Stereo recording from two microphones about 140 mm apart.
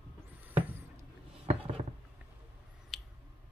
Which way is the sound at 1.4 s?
45° right (ahead or behind).